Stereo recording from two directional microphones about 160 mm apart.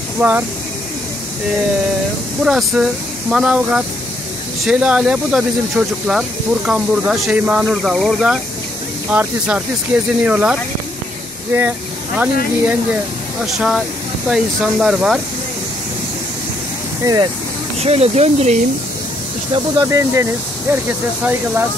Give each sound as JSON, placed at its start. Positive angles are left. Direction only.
{"t": 0.2, "sound": "speech", "side_deg": -10}
{"t": 2.4, "sound": "speech", "side_deg": -5}
{"t": 13.6, "sound": "speech", "side_deg": -5}
{"t": 17.0, "sound": "speech", "side_deg": -20}
{"t": 17.7, "sound": "speech", "side_deg": -40}
{"t": 19.5, "sound": "speech", "side_deg": -20}